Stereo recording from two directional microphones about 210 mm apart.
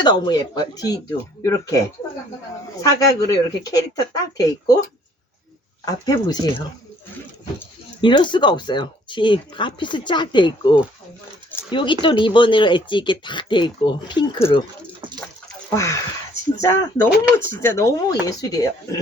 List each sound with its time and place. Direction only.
0.0 s speech: 20° left (ahead or behind)
2.8 s speech: 15° left (ahead or behind)
5.8 s speech: 20° left (ahead or behind)
8.0 s speech: 20° left (ahead or behind)
15.7 s speech: 15° left (ahead or behind)